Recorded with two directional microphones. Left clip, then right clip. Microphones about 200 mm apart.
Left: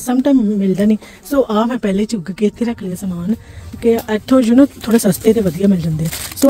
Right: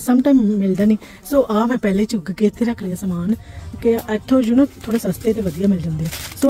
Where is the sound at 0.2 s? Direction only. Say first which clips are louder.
Left 2 dB; 5° left (ahead or behind).